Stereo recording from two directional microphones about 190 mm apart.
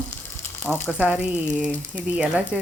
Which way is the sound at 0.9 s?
5° right (ahead or behind).